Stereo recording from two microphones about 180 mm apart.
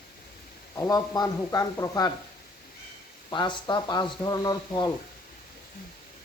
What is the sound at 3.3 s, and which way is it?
Speech, 25° left (ahead or behind).